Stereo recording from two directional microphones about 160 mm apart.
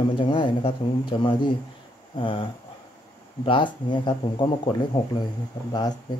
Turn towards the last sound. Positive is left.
turn(degrees=25)  # may be behind; listen again after turning